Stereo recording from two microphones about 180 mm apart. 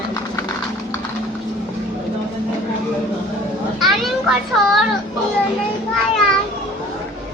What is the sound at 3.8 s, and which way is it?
Children playing, centre (ahead or behind).